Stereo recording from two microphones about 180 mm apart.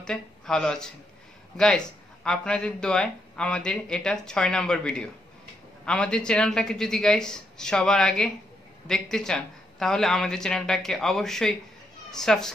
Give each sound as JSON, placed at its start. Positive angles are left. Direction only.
{"t": 0.0, "sound": "speech", "side_deg": 5}